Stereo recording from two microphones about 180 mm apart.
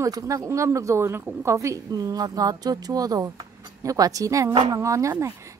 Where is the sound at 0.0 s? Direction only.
20° right (ahead or behind).